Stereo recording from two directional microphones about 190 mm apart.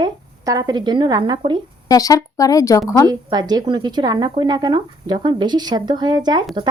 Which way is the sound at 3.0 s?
20° right (ahead or behind).